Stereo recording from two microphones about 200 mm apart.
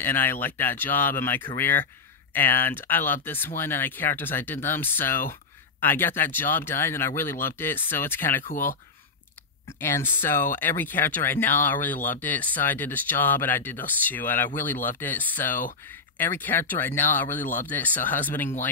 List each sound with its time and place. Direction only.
0.0 s speech: 10° left (ahead or behind)
8.5 s speech: 40° left (ahead or behind)
9.7 s speech: 10° left (ahead or behind)